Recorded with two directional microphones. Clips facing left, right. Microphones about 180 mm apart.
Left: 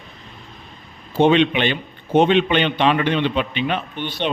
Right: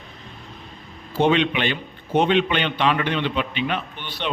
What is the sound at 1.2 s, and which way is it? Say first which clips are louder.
A man's voice: left 4 dB; 25° left (ahead or behind).